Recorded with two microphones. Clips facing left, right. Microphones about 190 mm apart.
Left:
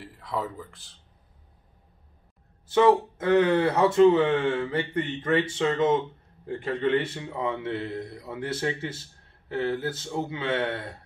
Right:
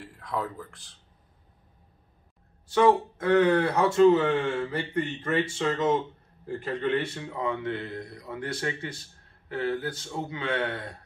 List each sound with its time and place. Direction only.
0.0 s speech: 5° left (ahead or behind)
2.7 s speech: 25° left (ahead or behind)